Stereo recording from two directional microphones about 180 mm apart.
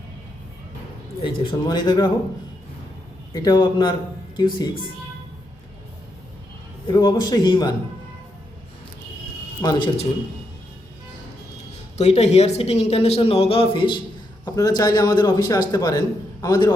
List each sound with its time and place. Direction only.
1.5 s a man's voice: 25° left (ahead or behind)
3.3 s a man's voice: 25° left (ahead or behind)
6.8 s a man's voice: 20° left (ahead or behind)
9.6 s a man's voice: 25° left (ahead or behind)
11.9 s a man's voice: 35° left (ahead or behind); by 16.7 s 15° left (ahead or behind)